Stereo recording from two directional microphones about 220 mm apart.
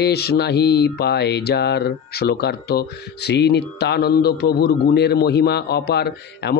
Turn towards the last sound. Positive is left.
turn(degrees=50)  # may be behind; listen again after turning